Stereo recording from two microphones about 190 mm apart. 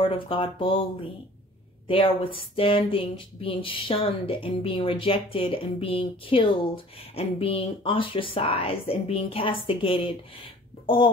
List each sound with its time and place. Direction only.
0.0 s speech: 30° left (ahead or behind)